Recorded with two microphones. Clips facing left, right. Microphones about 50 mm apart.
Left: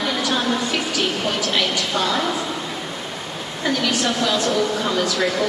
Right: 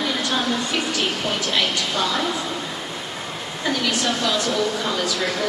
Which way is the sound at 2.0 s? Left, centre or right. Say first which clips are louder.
Left 2 dB; left.